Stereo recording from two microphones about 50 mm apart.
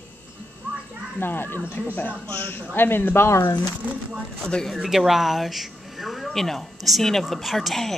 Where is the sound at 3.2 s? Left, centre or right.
Left.